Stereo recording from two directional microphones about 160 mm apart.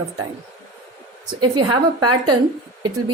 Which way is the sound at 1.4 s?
25° right (ahead or behind).